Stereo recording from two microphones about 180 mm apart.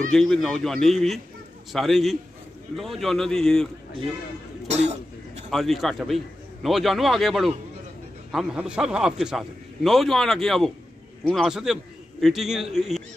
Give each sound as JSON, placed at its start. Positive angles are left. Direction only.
{"t": 0.1, "sound": "a man's voice", "side_deg": 0}
{"t": 4.6, "sound": "cough", "side_deg": -35}
{"t": 5.5, "sound": "a man's voice", "side_deg": 0}